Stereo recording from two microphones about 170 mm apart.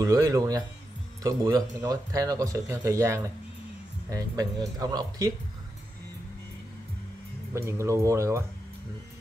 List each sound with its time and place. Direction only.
0.0 s speech: 20° right (ahead or behind)
7.5 s speech: 15° right (ahead or behind)